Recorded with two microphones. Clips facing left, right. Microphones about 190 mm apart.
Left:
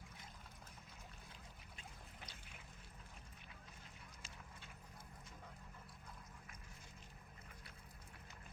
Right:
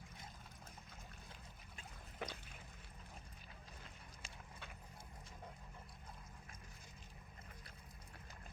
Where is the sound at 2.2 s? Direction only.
65° right (ahead or behind).